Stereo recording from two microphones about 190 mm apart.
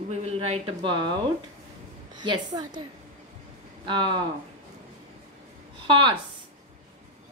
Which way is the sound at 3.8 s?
25° right (ahead or behind).